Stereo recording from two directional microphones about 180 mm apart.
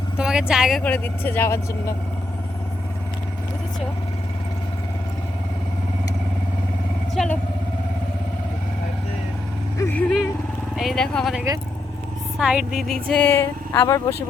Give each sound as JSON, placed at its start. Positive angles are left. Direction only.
{"t": 0.2, "sound": "speech", "side_deg": -5}
{"t": 9.7, "sound": "vehicle", "side_deg": 10}
{"t": 10.8, "sound": "speech", "side_deg": 0}
{"t": 13.7, "sound": "speech", "side_deg": 20}